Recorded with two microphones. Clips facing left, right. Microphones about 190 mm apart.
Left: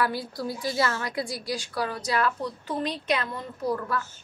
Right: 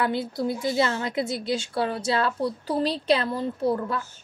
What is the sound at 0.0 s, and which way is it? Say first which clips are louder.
A woman's voice: right 3 dB; 25° right (ahead or behind).